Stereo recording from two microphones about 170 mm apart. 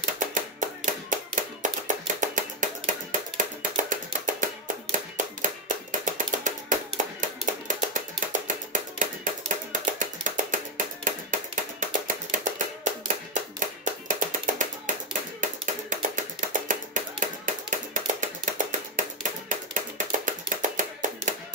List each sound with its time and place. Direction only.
0.0 s music: 50° right (ahead or behind)
1.1 s hands: 50° right (ahead or behind)
11.8 s music: 50° right (ahead or behind)
19.5 s a sound: 50° right (ahead or behind)